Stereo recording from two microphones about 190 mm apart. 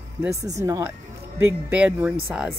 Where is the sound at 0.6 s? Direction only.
15° right (ahead or behind).